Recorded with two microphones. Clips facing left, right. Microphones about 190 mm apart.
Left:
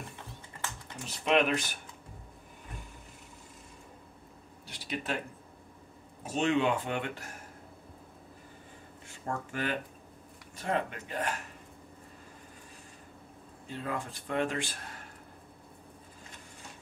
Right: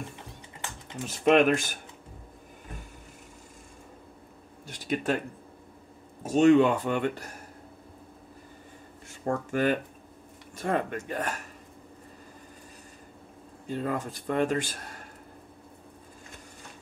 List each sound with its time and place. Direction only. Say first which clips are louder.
1.0 s speech: right 6 dB; 45° right (ahead or behind)
4.6 s speech: right 8 dB; 45° right (ahead or behind)
6.2 s speech: right 9 dB; 45° right (ahead or behind)
9.2 s speech: right 8 dB; 45° right (ahead or behind)
13.7 s speech: right 6 dB; 45° right (ahead or behind)